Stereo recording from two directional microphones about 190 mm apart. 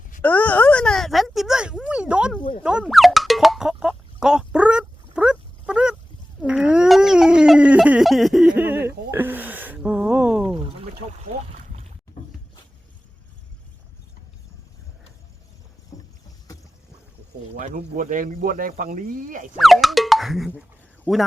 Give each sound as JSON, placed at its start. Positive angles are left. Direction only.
{"t": 0.2, "sound": "speech", "side_deg": 10}
{"t": 2.6, "sound": "boing", "side_deg": 0}
{"t": 6.4, "sound": "cat", "side_deg": -5}
{"t": 10.5, "sound": "a sound", "side_deg": -25}
{"t": 17.6, "sound": "speech", "side_deg": -45}
{"t": 19.5, "sound": "speech", "side_deg": 0}